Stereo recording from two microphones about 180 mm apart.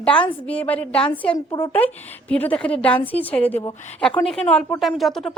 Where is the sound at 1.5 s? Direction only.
30° left (ahead or behind).